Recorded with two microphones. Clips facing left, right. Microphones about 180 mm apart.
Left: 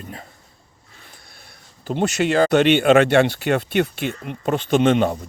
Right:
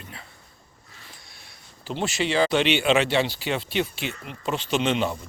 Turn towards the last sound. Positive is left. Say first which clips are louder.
# left 7 dB
turn(degrees=50)  # may be behind; listen again after turning